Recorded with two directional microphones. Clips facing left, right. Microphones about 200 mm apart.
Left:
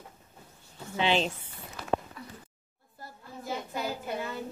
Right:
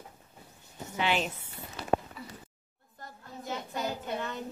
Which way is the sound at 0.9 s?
25° left (ahead or behind).